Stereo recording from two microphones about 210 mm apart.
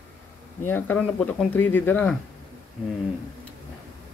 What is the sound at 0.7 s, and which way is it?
Speech, 10° left (ahead or behind).